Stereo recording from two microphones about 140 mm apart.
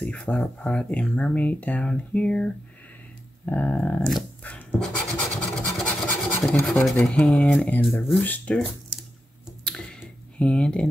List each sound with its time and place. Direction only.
0.0 s speech: 5° left (ahead or behind)
4.4 s scratch: 10° left (ahead or behind)
6.6 s speech: 5° left (ahead or behind)
9.7 s a sound: 5° left (ahead or behind)
10.4 s speech: 5° left (ahead or behind)